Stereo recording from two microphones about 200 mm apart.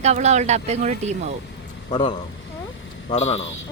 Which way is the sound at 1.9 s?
25° left (ahead or behind).